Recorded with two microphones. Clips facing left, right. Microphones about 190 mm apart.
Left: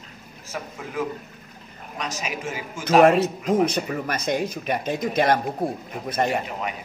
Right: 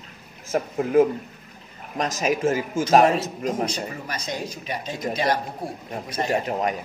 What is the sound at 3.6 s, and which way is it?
Speech, 55° left (ahead or behind).